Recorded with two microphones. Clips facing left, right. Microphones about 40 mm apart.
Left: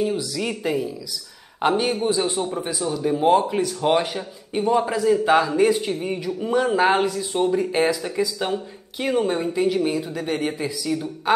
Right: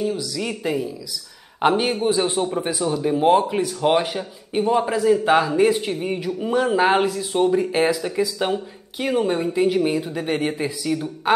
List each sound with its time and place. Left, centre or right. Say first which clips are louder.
0.0 s a sound: left 1 dB; centre
0.4 s speech: even; centre
1.6 s speech: right 2 dB; centre